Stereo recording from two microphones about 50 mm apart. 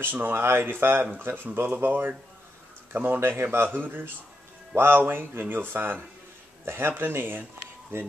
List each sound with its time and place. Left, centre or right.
0.0 s speech: right